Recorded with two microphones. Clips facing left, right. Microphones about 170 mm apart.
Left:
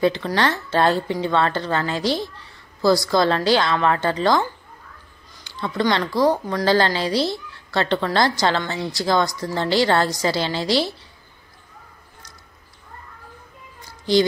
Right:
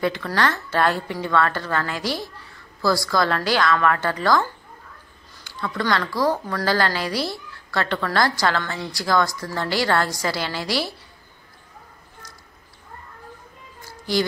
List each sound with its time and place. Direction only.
0.0 s a woman's voice: 25° left (ahead or behind)
5.6 s a woman's voice: 25° left (ahead or behind)